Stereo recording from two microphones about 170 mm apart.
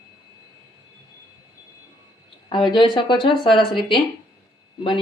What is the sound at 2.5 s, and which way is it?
Speech, 30° left (ahead or behind).